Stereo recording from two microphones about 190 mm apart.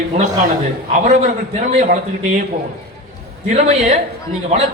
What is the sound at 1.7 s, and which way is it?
Speech, 40° right (ahead or behind).